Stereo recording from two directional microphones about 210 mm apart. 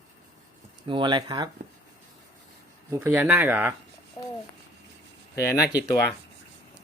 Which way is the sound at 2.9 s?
10° right (ahead or behind).